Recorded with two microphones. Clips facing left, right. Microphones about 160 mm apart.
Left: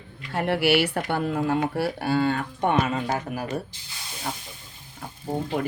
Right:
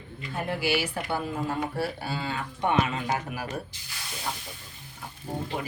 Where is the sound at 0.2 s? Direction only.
75° left (ahead or behind); by 3.4 s 45° left (ahead or behind).